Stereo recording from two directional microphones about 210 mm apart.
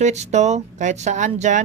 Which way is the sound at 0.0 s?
35° right (ahead or behind).